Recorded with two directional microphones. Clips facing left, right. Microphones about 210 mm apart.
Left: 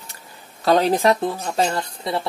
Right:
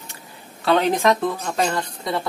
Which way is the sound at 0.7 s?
35° left (ahead or behind).